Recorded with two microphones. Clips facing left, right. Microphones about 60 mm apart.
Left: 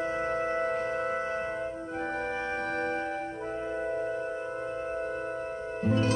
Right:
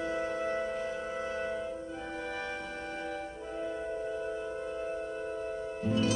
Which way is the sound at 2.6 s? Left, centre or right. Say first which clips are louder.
Left 9 dB; left.